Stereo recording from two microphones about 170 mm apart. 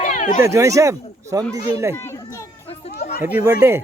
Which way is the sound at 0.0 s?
45° left (ahead or behind).